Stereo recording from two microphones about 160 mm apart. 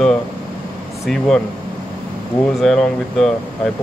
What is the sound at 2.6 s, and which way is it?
Speech, centre (ahead or behind).